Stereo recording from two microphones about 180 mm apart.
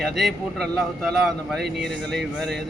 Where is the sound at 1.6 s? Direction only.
65° right (ahead or behind).